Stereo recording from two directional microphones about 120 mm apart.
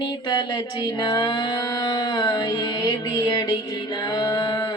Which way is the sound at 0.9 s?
40° left (ahead or behind).